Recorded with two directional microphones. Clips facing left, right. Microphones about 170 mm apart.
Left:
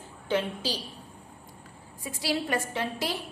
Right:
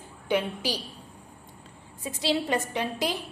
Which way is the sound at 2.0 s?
20° right (ahead or behind).